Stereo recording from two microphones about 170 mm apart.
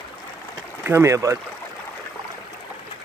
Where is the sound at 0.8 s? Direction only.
15° right (ahead or behind).